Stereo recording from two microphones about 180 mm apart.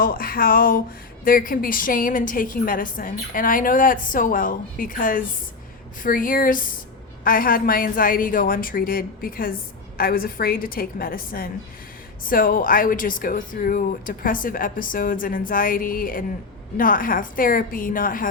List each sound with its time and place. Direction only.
0.0 s a woman's voice: 55° left (ahead or behind)